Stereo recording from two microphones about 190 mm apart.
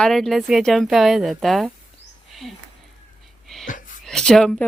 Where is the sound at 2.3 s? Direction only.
Centre (ahead or behind).